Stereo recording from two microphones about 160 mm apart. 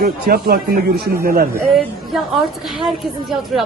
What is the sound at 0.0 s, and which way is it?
A man's voice, 65° right (ahead or behind).